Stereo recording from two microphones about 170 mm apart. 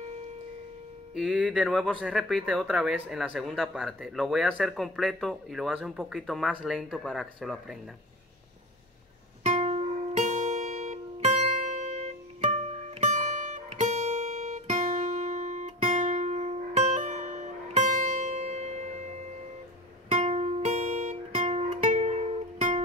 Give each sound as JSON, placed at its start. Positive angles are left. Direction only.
{"t": 1.1, "sound": "speech", "side_deg": 0}
{"t": 9.4, "sound": "music", "side_deg": -40}
{"t": 20.1, "sound": "music", "side_deg": -40}